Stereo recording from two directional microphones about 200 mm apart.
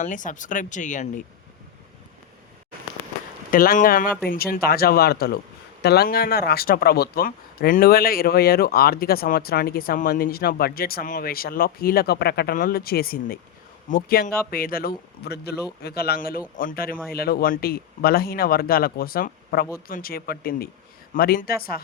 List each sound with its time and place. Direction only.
0.0 s speech: 40° left (ahead or behind)
3.5 s speech: 45° left (ahead or behind)